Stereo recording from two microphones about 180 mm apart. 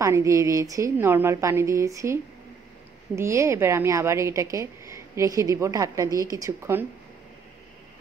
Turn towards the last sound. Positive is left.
turn(degrees=-15)  # may be behind; listen again after turning